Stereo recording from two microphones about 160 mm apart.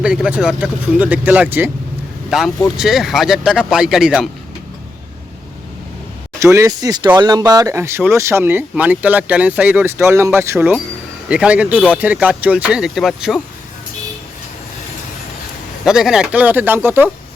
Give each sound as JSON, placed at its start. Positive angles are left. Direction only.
{"t": 0.0, "sound": "speech", "side_deg": -5}
{"t": 6.4, "sound": "speech", "side_deg": -20}
{"t": 15.8, "sound": "speech", "side_deg": -5}